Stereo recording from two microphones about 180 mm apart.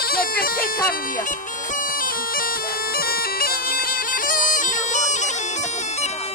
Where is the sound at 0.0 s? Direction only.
55° left (ahead or behind).